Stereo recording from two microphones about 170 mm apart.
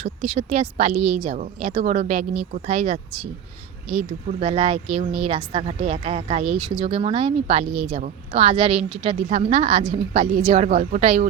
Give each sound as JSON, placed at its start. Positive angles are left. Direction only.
{"t": 0.0, "sound": "a woman's voice", "side_deg": -35}
{"t": 0.9, "sound": "a woman's voice", "side_deg": -10}
{"t": 1.2, "sound": "a woman's voice", "side_deg": -35}